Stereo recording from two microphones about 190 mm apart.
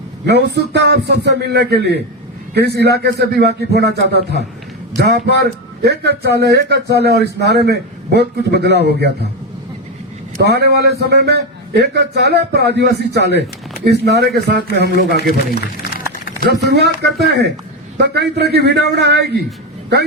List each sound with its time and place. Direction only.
0.3 s a man's voice: 60° right (ahead or behind)
10.4 s a man's voice: 60° right (ahead or behind)